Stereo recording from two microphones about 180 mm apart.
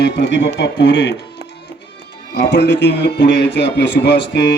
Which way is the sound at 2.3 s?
70° left (ahead or behind).